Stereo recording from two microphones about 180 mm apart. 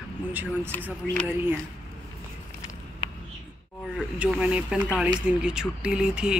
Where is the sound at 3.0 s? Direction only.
25° left (ahead or behind).